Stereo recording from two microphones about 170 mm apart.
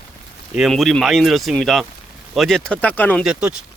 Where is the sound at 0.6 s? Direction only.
Centre (ahead or behind).